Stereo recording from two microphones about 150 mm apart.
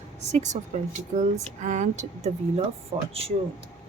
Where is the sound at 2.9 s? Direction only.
35° right (ahead or behind).